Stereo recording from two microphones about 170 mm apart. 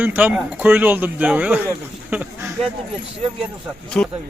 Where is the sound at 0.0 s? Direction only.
10° right (ahead or behind).